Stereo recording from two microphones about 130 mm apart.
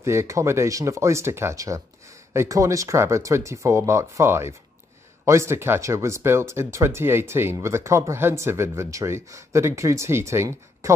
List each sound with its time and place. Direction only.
0.0 s speech: 20° right (ahead or behind)